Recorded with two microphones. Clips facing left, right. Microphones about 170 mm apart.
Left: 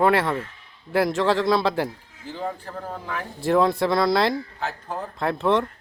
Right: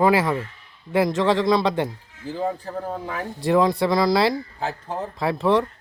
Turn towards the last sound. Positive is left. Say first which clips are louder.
# right 2 dB
turn(degrees=0)  # may be behind; listen again after turning